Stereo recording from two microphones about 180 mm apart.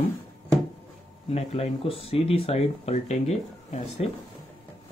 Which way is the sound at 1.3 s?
35° left (ahead or behind).